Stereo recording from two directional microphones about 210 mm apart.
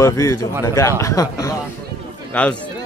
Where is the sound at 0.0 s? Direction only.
15° left (ahead or behind).